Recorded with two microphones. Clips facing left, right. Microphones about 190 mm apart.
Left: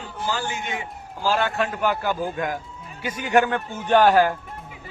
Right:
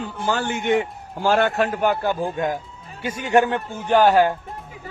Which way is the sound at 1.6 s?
35° right (ahead or behind).